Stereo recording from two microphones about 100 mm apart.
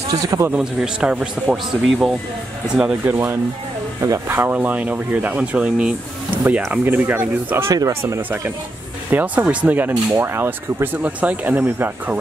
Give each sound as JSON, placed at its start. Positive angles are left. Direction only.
{"t": 0.1, "sound": "a man's voice", "side_deg": -35}
{"t": 0.5, "sound": "speech", "side_deg": -5}
{"t": 3.1, "sound": "speech", "side_deg": -25}